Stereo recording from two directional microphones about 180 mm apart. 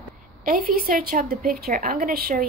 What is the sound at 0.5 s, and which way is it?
Speech, 55° right (ahead or behind).